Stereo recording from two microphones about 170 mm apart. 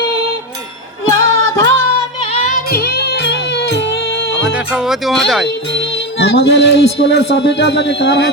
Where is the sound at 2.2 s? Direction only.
40° left (ahead or behind).